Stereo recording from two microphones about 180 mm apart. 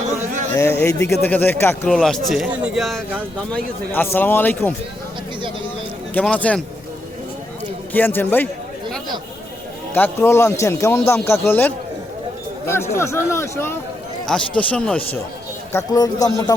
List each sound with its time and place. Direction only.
0.5 s a man's voice: 15° left (ahead or behind); by 3.2 s 5° right (ahead or behind)
3.5 s a man's voice: 10° left (ahead or behind)
6.1 s a man's voice: 10° left (ahead or behind)
7.9 s a man's voice: 10° left (ahead or behind)
9.9 s a man's voice: 15° left (ahead or behind)
15.7 s speech: 20° left (ahead or behind)